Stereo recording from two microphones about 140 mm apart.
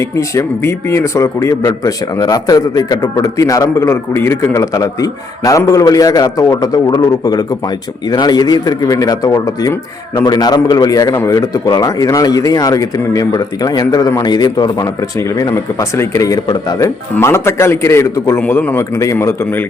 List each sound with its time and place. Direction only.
0.0 s a man's voice: 20° left (ahead or behind)